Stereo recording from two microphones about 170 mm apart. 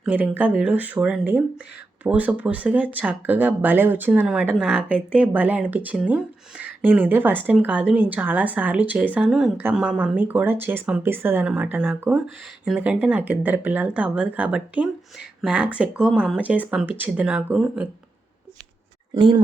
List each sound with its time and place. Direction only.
0.0 s speech: 10° right (ahead or behind)
19.1 s speech: 25° right (ahead or behind)